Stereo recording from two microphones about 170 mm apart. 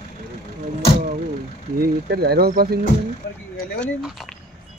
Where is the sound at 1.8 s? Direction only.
65° right (ahead or behind).